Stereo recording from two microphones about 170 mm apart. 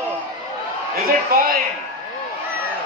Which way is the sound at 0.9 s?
60° right (ahead or behind).